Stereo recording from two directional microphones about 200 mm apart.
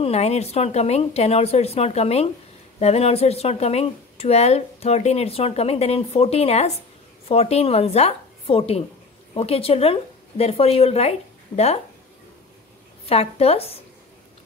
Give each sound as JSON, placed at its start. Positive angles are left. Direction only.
{"t": 0.0, "sound": "a woman's voice", "side_deg": 30}
{"t": 13.0, "sound": "speech", "side_deg": 30}